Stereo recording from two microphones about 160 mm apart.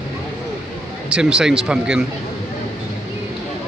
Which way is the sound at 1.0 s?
5° right (ahead or behind).